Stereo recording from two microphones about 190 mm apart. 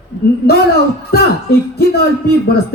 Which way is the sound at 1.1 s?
55° left (ahead or behind).